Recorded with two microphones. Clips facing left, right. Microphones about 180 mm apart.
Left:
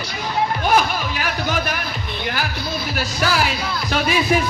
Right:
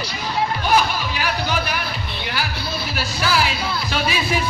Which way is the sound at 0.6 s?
50° left (ahead or behind).